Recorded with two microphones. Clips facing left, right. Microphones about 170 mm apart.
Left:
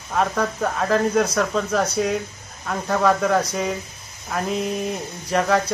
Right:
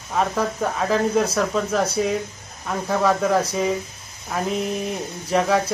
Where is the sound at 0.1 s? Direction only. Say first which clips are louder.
Even; 5° right (ahead or behind).